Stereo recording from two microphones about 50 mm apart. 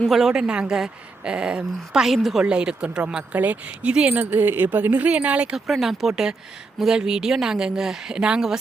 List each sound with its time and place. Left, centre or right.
0.1 s a woman's voice: centre
2.4 s speech: centre
3.3 s speech: right
3.8 s speech: right
4.1 s speech: right
5.5 s a woman's voice: centre